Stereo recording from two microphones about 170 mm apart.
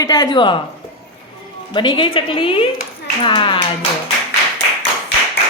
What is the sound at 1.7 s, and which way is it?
Speech, 30° left (ahead or behind).